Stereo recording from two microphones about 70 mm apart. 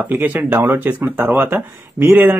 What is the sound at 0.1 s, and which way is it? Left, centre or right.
Speech, right.